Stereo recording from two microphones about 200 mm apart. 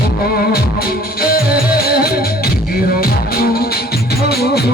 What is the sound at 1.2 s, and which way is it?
Music, 50° left (ahead or behind).